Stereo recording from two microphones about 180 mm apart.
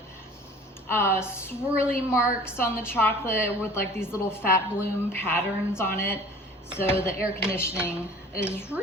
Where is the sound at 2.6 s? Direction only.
10° left (ahead or behind).